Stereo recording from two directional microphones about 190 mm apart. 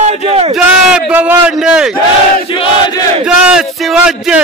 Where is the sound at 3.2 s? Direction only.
5° right (ahead or behind).